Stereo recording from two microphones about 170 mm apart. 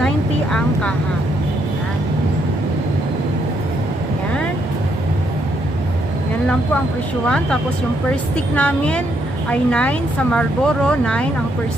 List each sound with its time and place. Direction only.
0.0 s speech: 5° left (ahead or behind)
8.5 s a woman's voice: 5° left (ahead or behind)